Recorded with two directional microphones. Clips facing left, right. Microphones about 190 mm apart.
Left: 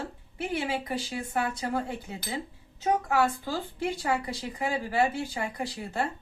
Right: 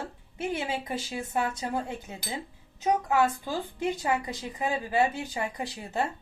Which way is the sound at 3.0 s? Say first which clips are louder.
Right 1 dB; 15° right (ahead or behind).